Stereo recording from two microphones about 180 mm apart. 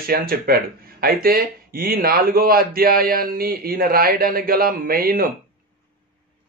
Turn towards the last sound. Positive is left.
turn(degrees=-55)  # may be behind; listen again after turning